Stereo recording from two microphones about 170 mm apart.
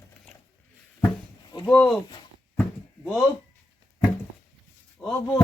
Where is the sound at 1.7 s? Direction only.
5° left (ahead or behind).